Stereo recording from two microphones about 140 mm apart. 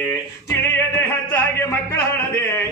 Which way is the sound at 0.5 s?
15° left (ahead or behind).